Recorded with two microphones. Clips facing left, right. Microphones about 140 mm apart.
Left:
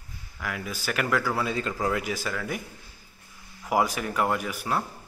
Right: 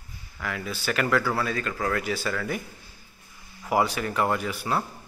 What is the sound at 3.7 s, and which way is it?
Speech, 5° left (ahead or behind).